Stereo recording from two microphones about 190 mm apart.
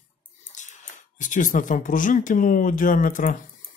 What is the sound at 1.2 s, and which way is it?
Speech, 45° left (ahead or behind).